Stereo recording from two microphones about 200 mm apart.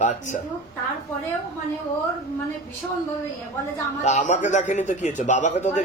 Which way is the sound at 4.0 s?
35° left (ahead or behind).